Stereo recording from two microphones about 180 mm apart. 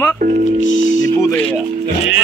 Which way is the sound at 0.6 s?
90° left.